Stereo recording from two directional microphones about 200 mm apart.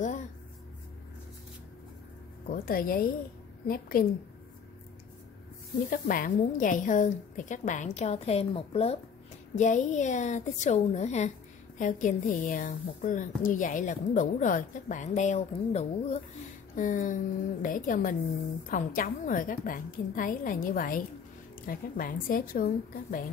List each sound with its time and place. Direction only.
2.4 s a woman's voice: 45° left (ahead or behind)
5.9 s a woman's voice: 45° left (ahead or behind)